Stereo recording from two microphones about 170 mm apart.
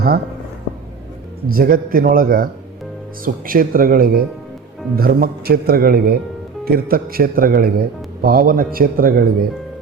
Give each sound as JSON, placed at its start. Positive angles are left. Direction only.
{"t": 1.5, "sound": "a man's voice", "side_deg": -60}